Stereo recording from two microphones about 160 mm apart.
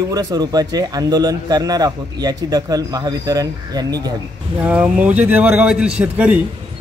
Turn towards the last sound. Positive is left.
turn(degrees=-10)  # may be behind; listen again after turning